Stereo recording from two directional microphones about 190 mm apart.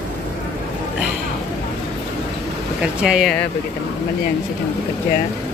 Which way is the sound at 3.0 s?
Centre (ahead or behind).